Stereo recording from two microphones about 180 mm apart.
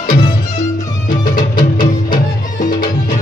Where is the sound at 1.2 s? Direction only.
25° left (ahead or behind).